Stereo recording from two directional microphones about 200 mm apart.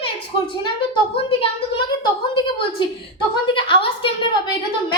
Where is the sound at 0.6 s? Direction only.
25° left (ahead or behind).